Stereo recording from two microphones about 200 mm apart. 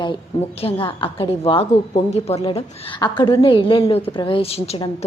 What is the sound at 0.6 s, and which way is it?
A woman's voice, 25° left (ahead or behind).